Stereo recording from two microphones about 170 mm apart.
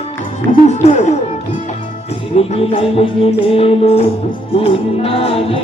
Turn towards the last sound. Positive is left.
turn(degrees=35)  # may be behind; listen again after turning